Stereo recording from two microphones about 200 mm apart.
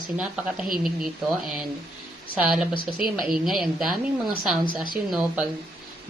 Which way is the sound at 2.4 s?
5° right (ahead or behind).